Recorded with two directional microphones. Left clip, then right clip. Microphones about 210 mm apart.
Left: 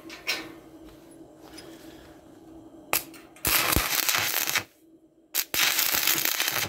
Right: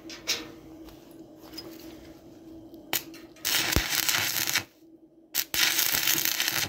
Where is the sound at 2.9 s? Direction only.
15° left (ahead or behind).